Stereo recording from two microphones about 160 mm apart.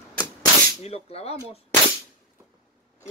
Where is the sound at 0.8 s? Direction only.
40° left (ahead or behind).